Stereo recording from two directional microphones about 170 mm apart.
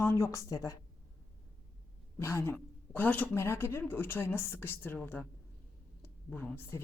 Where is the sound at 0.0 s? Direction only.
15° left (ahead or behind).